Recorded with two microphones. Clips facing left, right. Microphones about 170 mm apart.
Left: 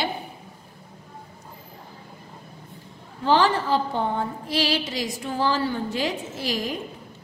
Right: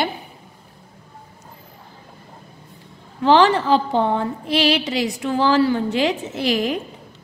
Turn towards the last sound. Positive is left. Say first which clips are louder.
# right 7 dB
turn(degrees=-70)  # may be behind; listen again after turning